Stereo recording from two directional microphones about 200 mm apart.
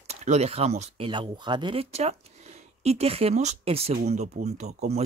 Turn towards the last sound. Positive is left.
turn(degrees=-35)  # may be behind; listen again after turning